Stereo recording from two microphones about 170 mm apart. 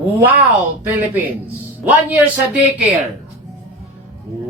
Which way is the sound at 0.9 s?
10° right (ahead or behind).